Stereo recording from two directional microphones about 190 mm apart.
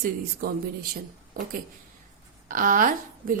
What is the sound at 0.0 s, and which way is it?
Speech, 50° right (ahead or behind).